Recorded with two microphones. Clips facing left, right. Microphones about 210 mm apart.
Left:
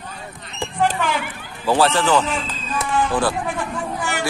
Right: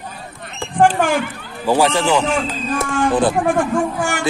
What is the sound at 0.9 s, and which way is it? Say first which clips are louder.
Children playing: right 6 dB; 50° right (ahead or behind).